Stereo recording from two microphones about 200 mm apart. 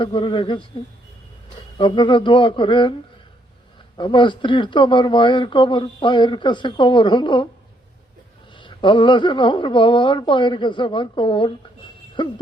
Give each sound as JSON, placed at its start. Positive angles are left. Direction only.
{"t": 0.0, "sound": "speech", "side_deg": 25}
{"t": 1.8, "sound": "speech", "side_deg": 25}
{"t": 3.9, "sound": "speech", "side_deg": 25}
{"t": 8.5, "sound": "speech", "side_deg": 25}